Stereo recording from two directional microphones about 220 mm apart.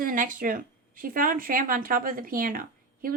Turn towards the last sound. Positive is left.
turn(degrees=-40)  # may be behind; listen again after turning